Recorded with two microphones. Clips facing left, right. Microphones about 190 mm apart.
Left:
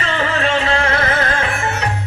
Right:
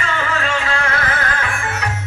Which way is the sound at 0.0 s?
30° left (ahead or behind).